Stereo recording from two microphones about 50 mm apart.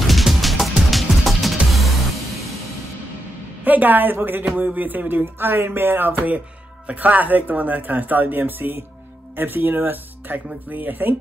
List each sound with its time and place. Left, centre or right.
0.0 s music: centre
3.6 s speech: right
4.6 s a sound: right
6.9 s speech: right